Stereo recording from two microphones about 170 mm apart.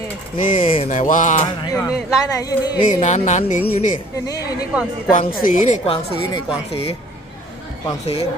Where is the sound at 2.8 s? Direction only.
45° left (ahead or behind).